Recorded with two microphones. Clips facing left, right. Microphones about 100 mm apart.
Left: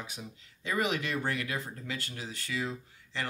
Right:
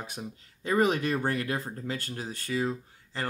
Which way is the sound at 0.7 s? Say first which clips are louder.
Right 6 dB; 40° right (ahead or behind).